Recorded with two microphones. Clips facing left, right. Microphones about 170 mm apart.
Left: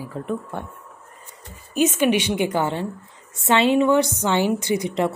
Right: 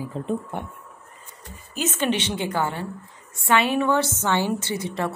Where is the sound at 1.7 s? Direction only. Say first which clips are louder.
Left 6 dB; 15° left (ahead or behind).